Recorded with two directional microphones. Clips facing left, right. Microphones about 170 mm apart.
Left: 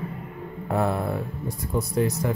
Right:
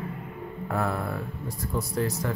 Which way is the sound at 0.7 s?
25° left (ahead or behind).